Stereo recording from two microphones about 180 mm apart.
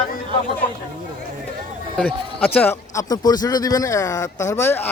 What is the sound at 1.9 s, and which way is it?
A man's voice, 10° left (ahead or behind).